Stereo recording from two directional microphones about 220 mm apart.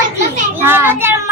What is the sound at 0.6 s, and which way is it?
Speech, 10° right (ahead or behind).